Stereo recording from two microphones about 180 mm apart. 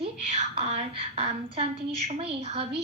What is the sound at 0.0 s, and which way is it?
A woman's voice, 35° right (ahead or behind).